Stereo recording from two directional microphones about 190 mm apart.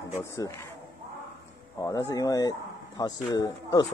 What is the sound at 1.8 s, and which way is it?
Speech, 15° left (ahead or behind).